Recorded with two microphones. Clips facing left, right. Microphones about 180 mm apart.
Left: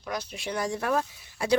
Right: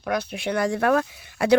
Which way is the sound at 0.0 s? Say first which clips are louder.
Right 8 dB; 60° right (ahead or behind).